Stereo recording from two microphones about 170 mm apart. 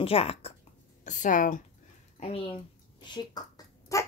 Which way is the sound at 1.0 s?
50° left (ahead or behind).